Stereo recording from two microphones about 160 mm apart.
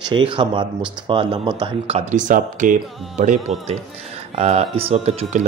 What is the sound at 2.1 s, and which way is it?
Speech, 55° right (ahead or behind).